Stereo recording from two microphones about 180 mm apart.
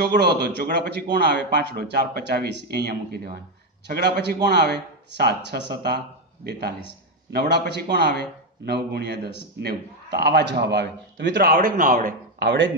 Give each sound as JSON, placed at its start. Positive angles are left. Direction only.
{"t": 0.0, "sound": "a man's voice", "side_deg": -65}
{"t": 12.4, "sound": "speech", "side_deg": -90}